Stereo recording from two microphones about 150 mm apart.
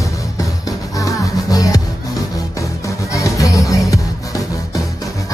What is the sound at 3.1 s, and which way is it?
Music, 20° left (ahead or behind).